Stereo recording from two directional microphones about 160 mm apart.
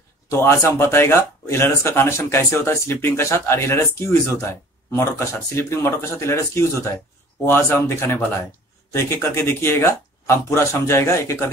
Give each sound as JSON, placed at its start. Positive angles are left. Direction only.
{"t": 0.3, "sound": "speech", "side_deg": 15}